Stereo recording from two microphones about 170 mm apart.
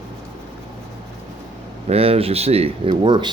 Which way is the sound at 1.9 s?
35° right (ahead or behind).